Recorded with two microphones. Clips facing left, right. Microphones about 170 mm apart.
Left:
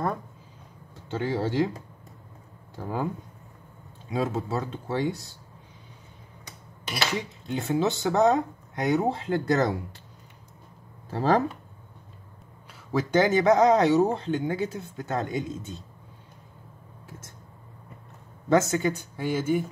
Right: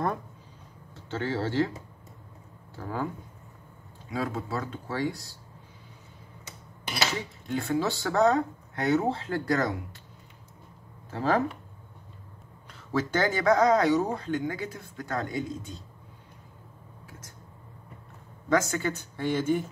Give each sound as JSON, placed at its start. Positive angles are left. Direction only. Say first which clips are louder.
{"t": 0.9, "sound": "speech", "louder": "left 2 dB", "side_deg": 15}
{"t": 2.7, "sound": "speech", "louder": "left 2 dB", "side_deg": 15}
{"t": 4.1, "sound": "speech", "louder": "left 4 dB", "side_deg": 20}
{"t": 7.2, "sound": "speech", "louder": "left 1 dB", "side_deg": 20}
{"t": 11.1, "sound": "speech", "louder": "left 3 dB", "side_deg": 35}
{"t": 12.9, "sound": "speech", "louder": "left 5 dB", "side_deg": 15}
{"t": 18.5, "sound": "speech", "louder": "left 4 dB", "side_deg": 25}